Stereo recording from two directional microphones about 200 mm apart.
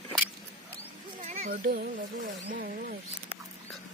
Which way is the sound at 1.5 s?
50° right (ahead or behind).